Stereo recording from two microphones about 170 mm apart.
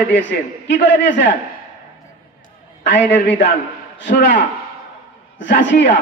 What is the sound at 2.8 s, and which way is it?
A man's voice, 90° left.